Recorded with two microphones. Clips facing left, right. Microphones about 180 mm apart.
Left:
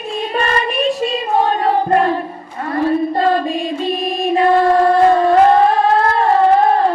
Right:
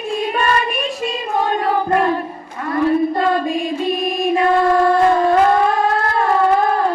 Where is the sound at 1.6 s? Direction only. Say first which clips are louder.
Left 2 dB; 30° left (ahead or behind).